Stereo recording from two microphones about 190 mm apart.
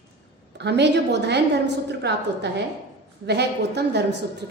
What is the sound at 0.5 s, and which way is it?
A woman's voice, 65° right (ahead or behind).